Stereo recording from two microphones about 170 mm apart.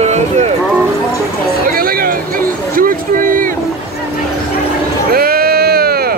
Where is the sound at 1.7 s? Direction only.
55° right (ahead or behind).